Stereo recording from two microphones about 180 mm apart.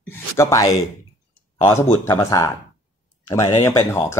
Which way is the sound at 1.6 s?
15° left (ahead or behind).